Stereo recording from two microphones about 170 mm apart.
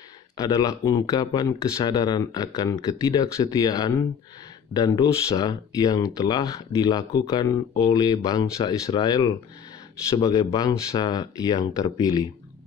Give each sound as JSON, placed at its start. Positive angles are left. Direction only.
{"t": 0.4, "sound": "speech", "side_deg": 20}